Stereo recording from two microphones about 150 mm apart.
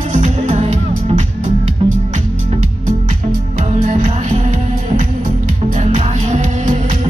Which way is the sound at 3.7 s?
50° right (ahead or behind).